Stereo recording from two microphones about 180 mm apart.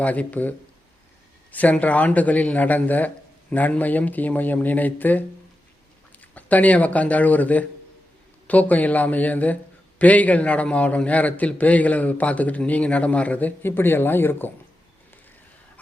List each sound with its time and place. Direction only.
0.0 s a man's voice: 10° left (ahead or behind)
1.5 s a man's voice: 10° left (ahead or behind)
6.3 s a man's voice: 10° left (ahead or behind)